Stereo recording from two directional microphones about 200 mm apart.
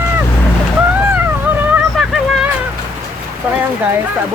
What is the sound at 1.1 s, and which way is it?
Dog, 10° right (ahead or behind).